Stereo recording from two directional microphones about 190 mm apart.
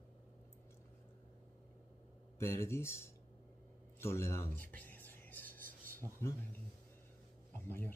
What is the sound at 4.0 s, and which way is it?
Speech, 15° left (ahead or behind).